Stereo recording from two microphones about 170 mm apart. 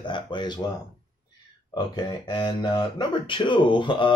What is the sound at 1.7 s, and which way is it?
Speech, 25° left (ahead or behind).